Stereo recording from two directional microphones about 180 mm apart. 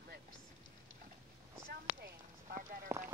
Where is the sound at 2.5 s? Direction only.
15° right (ahead or behind).